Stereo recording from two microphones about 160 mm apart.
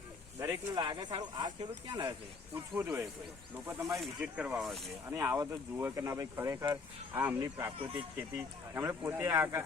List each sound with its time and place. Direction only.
0.3 s speech: 25° right (ahead or behind)
2.7 s speech: 15° right (ahead or behind)
4.0 s speech: 5° right (ahead or behind)
5.0 s speech: 15° right (ahead or behind)